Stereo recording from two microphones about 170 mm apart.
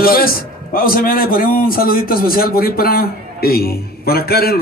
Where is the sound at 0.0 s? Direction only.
60° left (ahead or behind).